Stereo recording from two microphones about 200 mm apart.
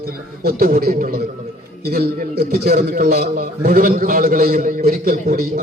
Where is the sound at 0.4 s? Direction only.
45° right (ahead or behind).